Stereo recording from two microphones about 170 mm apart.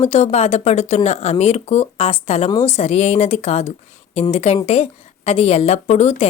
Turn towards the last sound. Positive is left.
turn(degrees=40)  # may be behind; listen again after turning